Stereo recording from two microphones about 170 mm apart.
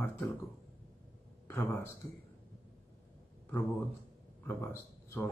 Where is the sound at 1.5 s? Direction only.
15° left (ahead or behind).